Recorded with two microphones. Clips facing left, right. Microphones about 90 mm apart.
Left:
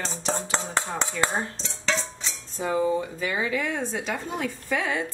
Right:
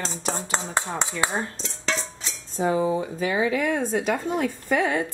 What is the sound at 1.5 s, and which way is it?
Dishes, 5° right (ahead or behind).